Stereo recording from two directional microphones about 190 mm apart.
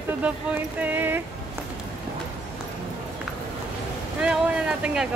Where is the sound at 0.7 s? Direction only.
10° right (ahead or behind).